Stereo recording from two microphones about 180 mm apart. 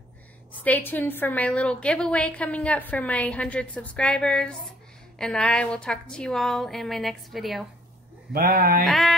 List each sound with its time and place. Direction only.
0.5 s a woman's voice: 10° left (ahead or behind)
8.3 s a sound: 55° right (ahead or behind)
8.8 s a woman's voice: centre (ahead or behind)